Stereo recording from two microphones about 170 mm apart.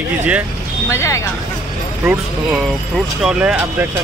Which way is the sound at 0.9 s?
15° left (ahead or behind).